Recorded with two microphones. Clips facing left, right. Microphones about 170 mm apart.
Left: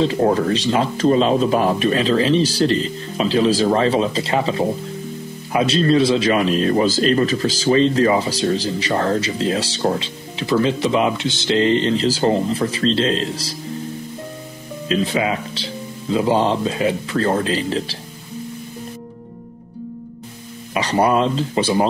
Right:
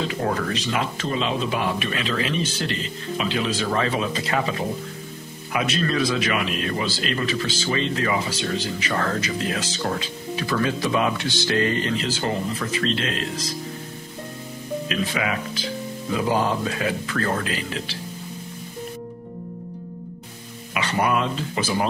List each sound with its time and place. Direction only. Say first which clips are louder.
0.0 s speech: left 8 dB; 30° left (ahead or behind)
14.9 s speech: left 8 dB; 30° left (ahead or behind)
20.7 s speech: left 6 dB; 35° left (ahead or behind)